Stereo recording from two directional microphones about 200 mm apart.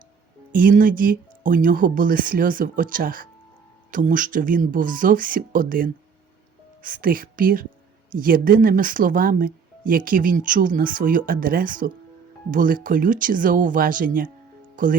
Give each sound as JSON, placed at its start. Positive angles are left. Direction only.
{"t": 0.5, "sound": "speech", "side_deg": -45}